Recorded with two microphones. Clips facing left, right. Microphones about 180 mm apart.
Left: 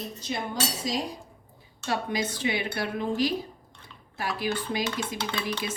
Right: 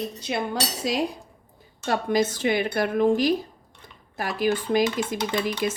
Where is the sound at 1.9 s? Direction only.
45° right (ahead or behind).